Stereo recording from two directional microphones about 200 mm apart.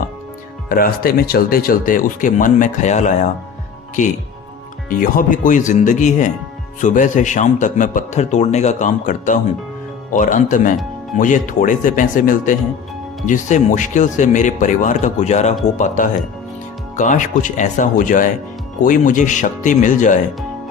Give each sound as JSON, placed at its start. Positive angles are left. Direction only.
{"t": 0.7, "sound": "speech", "side_deg": 45}
{"t": 4.9, "sound": "a man's voice", "side_deg": 45}